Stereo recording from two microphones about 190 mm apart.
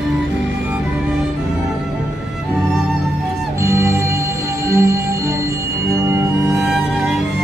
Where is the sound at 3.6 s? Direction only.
15° right (ahead or behind).